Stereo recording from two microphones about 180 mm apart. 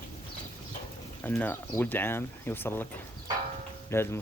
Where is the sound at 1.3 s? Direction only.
10° left (ahead or behind).